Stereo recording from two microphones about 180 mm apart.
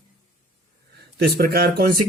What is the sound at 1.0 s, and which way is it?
Speech, 60° right (ahead or behind).